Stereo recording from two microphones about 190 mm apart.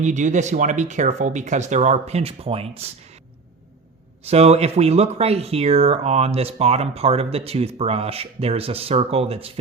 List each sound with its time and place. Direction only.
0.0 s speech: 40° right (ahead or behind)
4.3 s speech: 35° right (ahead or behind)